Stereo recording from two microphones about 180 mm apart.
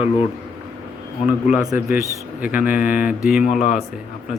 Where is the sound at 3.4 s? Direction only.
40° left (ahead or behind).